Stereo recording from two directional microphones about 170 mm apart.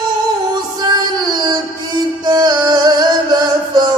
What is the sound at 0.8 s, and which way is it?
Music, 25° right (ahead or behind).